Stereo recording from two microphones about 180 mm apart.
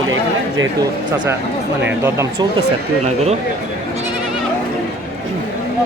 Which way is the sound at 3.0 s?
35° right (ahead or behind).